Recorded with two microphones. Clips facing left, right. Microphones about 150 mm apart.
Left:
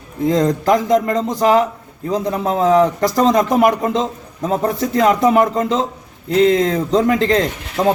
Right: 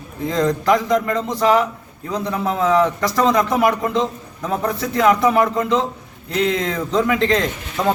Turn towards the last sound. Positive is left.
turn(degrees=40)  # may be behind; listen again after turning